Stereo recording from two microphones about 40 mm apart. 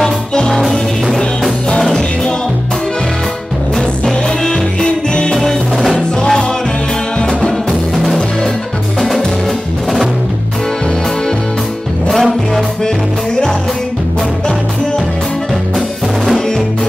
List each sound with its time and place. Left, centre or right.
0.6 s music: centre
4.0 s music: centre
5.3 s music: centre
5.9 s music: centre
7.9 s music: centre
12.1 s music: centre